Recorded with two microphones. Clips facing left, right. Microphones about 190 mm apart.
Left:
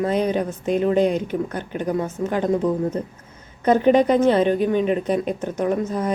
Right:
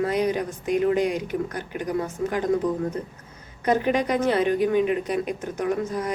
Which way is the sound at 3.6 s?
30° left (ahead or behind).